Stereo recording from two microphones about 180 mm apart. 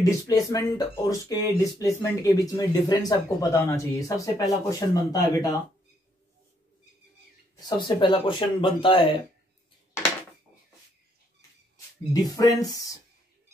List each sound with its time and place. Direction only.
0.0 s speech: 20° left (ahead or behind)
7.6 s speech: 25° left (ahead or behind)
12.1 s speech: 20° left (ahead or behind)